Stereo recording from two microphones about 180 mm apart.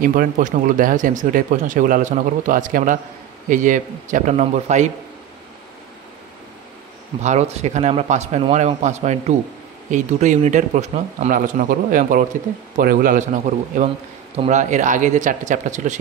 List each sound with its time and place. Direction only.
0.0 s speech: 50° right (ahead or behind)
7.2 s speech: 40° right (ahead or behind)